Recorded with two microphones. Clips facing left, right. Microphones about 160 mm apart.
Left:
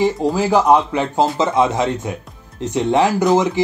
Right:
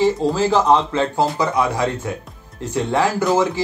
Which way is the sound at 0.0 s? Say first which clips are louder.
Even; 15° left (ahead or behind).